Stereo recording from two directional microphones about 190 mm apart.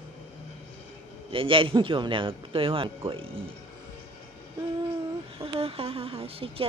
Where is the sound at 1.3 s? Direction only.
30° right (ahead or behind).